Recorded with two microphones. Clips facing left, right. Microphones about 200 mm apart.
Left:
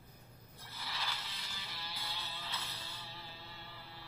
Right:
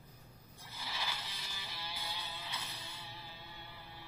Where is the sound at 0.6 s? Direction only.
15° right (ahead or behind).